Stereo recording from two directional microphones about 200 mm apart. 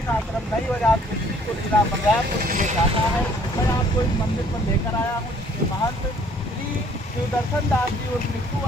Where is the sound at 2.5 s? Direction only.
40° right (ahead or behind).